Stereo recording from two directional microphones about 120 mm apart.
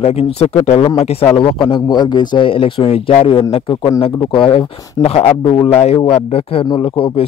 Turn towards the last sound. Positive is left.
turn(degrees=50)  # may be behind; listen again after turning